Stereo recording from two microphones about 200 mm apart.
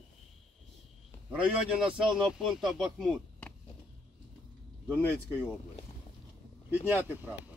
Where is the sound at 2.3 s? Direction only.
Centre (ahead or behind).